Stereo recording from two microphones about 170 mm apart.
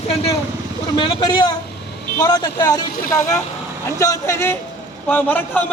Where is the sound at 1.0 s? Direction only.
25° left (ahead or behind).